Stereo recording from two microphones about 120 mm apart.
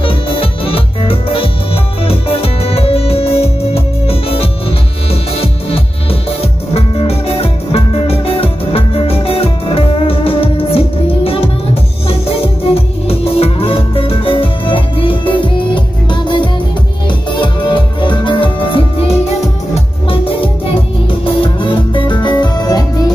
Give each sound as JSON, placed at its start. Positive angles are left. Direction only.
{"t": 0.0, "sound": "music", "side_deg": 50}
{"t": 6.7, "sound": "music", "side_deg": 55}